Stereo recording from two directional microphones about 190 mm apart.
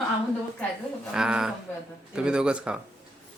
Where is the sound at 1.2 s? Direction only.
5° right (ahead or behind).